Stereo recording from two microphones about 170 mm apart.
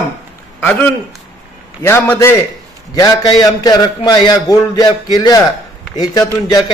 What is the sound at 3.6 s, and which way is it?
A man's voice, 20° left (ahead or behind).